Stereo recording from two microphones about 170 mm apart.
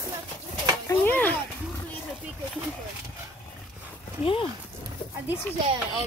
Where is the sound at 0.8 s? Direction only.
10° left (ahead or behind).